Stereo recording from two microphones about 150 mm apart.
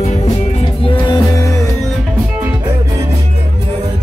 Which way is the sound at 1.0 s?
25° left (ahead or behind).